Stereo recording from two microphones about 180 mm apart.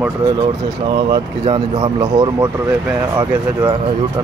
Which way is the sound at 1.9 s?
20° right (ahead or behind).